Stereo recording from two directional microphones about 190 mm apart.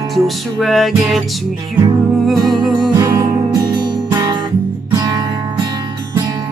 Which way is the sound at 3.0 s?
20° right (ahead or behind).